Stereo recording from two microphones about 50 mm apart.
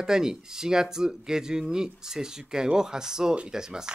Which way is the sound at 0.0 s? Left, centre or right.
Centre.